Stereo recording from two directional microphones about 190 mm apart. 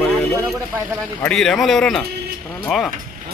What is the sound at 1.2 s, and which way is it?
Speech, 5° left (ahead or behind).